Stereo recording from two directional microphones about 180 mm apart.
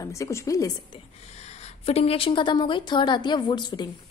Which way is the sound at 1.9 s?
35° left (ahead or behind).